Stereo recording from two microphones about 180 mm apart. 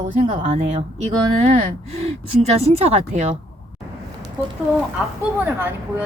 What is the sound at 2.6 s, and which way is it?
Speech, 35° right (ahead or behind).